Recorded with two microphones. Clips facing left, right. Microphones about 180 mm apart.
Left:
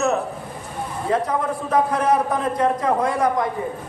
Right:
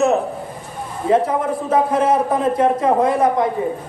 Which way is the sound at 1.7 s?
25° right (ahead or behind).